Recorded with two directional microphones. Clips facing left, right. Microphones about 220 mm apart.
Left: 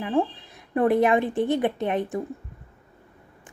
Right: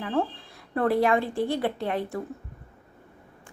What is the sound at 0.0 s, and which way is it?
A woman's voice, 15° left (ahead or behind).